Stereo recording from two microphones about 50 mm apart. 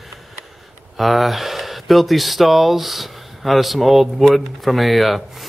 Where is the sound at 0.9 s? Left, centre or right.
Centre.